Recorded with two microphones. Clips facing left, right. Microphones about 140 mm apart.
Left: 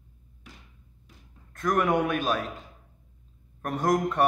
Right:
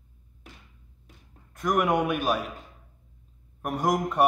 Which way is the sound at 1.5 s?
10° right (ahead or behind).